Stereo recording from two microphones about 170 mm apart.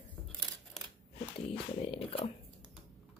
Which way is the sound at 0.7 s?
Centre (ahead or behind).